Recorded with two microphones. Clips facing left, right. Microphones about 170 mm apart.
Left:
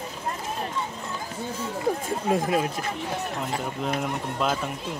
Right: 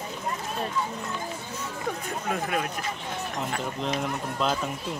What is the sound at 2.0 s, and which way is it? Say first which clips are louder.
Speech: left 5 dB; 30° left (ahead or behind).